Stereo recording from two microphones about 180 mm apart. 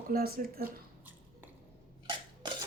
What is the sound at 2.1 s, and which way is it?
Cough, 25° right (ahead or behind).